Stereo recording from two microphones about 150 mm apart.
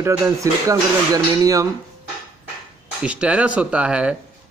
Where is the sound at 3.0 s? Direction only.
5° right (ahead or behind).